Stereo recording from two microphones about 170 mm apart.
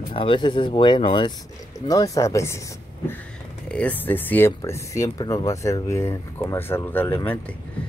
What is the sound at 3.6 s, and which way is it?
Speech, 10° left (ahead or behind).